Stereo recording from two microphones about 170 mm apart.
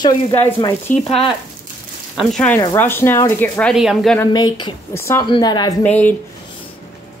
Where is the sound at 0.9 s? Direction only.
50° left (ahead or behind).